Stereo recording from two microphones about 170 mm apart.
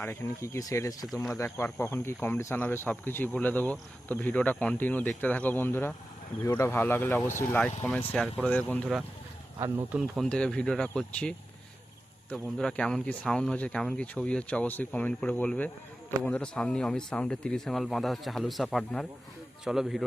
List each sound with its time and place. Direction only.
0.0 s speech: 15° left (ahead or behind)
9.6 s speech: 15° right (ahead or behind)
10.2 s speech: 5° left (ahead or behind)
12.5 s speech: 5° left (ahead or behind)